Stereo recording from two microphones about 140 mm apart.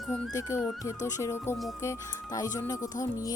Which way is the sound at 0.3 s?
20° left (ahead or behind).